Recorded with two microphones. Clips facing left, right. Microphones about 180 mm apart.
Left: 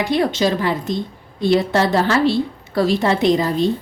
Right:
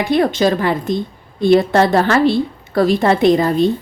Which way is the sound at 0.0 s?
55° right (ahead or behind).